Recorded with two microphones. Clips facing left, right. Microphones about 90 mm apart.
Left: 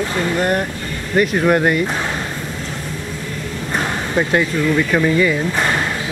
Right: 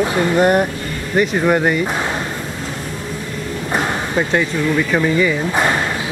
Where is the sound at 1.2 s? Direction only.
Centre (ahead or behind).